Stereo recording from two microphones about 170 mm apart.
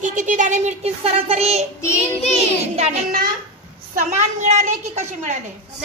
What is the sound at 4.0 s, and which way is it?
Speech, 45° right (ahead or behind).